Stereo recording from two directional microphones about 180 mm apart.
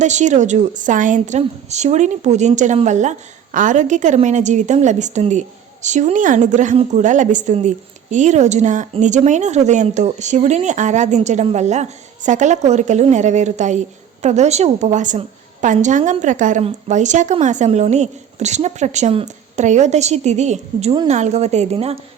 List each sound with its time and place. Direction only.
0.0 s a woman's voice: 40° right (ahead or behind)